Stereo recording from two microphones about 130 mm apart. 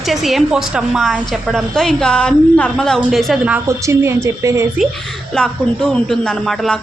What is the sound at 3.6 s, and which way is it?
A woman's voice, 20° right (ahead or behind).